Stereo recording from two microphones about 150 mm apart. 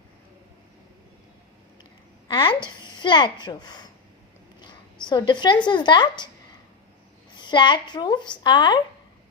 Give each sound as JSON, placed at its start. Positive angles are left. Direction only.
{"t": 2.2, "sound": "a woman's voice", "side_deg": 30}
{"t": 5.0, "sound": "speech", "side_deg": 30}
{"t": 7.3, "sound": "speech", "side_deg": 30}